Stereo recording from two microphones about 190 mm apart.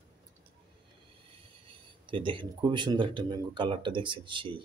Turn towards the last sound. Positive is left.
turn(degrees=-25)  # may be behind; listen again after turning